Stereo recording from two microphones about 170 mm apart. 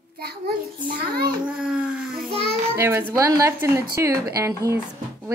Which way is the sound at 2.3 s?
35° right (ahead or behind).